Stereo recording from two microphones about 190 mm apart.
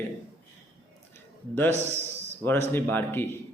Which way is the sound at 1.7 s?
35° right (ahead or behind).